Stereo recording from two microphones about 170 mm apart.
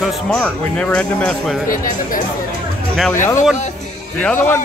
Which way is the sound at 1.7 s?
50° left (ahead or behind).